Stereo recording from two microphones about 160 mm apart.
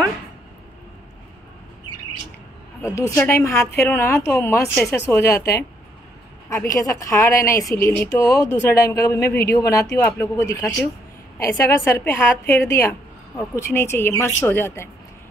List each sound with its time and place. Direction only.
2.8 s a woman's voice: 20° left (ahead or behind)